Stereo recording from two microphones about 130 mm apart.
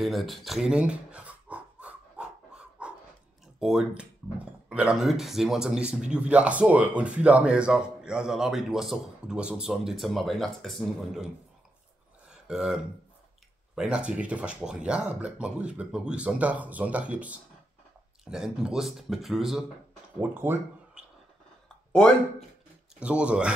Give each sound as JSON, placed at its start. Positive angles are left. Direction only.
{"t": 0.0, "sound": "a sound", "side_deg": 0}
{"t": 3.5, "sound": "speech", "side_deg": -5}
{"t": 12.3, "sound": "a sound", "side_deg": -5}
{"t": 13.7, "sound": "speech", "side_deg": -5}
{"t": 20.2, "sound": "speech", "side_deg": -15}
{"t": 22.9, "sound": "speech", "side_deg": -10}